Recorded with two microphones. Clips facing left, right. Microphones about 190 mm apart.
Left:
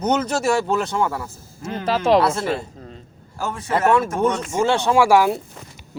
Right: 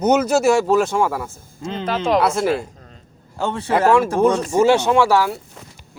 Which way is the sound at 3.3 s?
25° right (ahead or behind).